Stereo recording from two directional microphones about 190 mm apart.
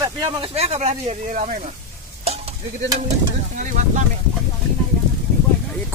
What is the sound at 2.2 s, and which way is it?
Stir, 35° right (ahead or behind).